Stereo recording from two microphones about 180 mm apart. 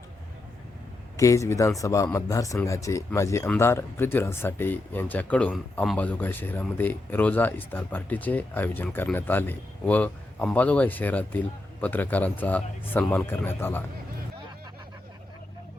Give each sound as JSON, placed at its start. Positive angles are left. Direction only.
{"t": 1.1, "sound": "speech", "side_deg": 15}